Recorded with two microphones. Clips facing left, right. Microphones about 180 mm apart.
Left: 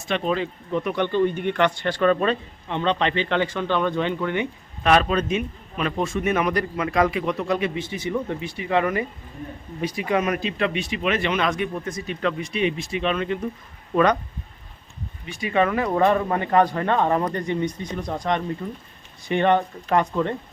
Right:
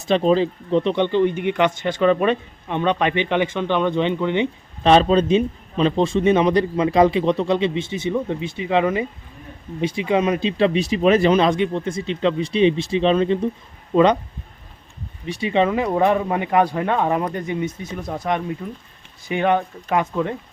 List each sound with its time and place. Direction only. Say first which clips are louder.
0.1 s speech: right 7 dB; 30° right (ahead or behind)
15.3 s speech: right 3 dB; 25° right (ahead or behind); by 20.3 s 5° right (ahead or behind)